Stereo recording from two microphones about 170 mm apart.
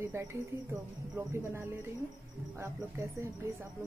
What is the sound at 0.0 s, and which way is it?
Speech, 15° right (ahead or behind).